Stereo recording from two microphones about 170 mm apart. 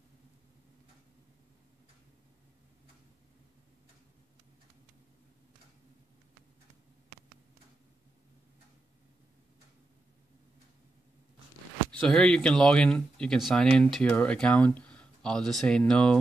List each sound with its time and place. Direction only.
11.9 s speech: 5° left (ahead or behind)